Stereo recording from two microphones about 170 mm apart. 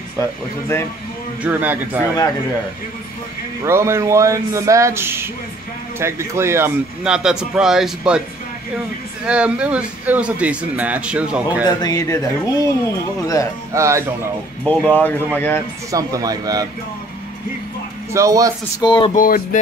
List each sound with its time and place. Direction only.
0.2 s speech: 15° left (ahead or behind)
1.4 s speech: 10° right (ahead or behind)
3.6 s speech: 15° right (ahead or behind)
7.1 s speech: 5° right (ahead or behind)
9.2 s speech: 5° right (ahead or behind)
11.6 s speech: 20° left (ahead or behind)
13.7 s speech: 15° right (ahead or behind)
14.6 s speech: 10° left (ahead or behind)
15.9 s speech: 20° right (ahead or behind)
18.1 s speech: 20° right (ahead or behind)
18.8 s speech: 30° left (ahead or behind)
19.1 s music: 55° left (ahead or behind)